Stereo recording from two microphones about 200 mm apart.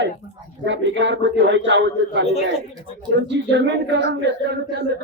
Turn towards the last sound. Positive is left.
turn(degrees=-60)  # may be behind; listen again after turning